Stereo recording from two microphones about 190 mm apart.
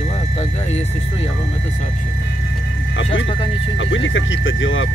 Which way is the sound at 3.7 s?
90° left.